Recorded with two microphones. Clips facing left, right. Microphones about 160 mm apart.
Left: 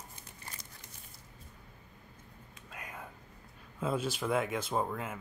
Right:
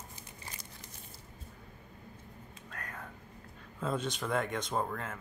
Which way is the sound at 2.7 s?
10° left (ahead or behind).